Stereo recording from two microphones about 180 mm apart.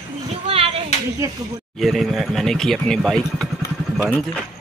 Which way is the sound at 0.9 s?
40° left (ahead or behind).